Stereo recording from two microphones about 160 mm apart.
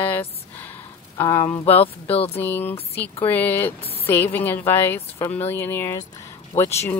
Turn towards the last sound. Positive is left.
turn(degrees=15)  # may be behind; listen again after turning